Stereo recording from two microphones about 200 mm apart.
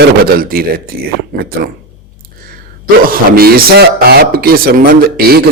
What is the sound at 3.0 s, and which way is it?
A man's voice, 50° right (ahead or behind).